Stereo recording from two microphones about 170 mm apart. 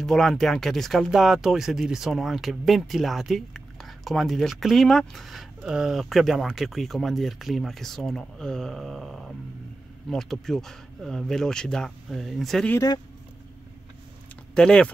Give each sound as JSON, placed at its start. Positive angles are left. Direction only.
{"t": 0.0, "sound": "speech", "side_deg": 0}
{"t": 12.7, "sound": "speech", "side_deg": 20}
{"t": 14.5, "sound": "speech", "side_deg": 5}